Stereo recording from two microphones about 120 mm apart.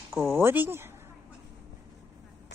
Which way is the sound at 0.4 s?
20° right (ahead or behind).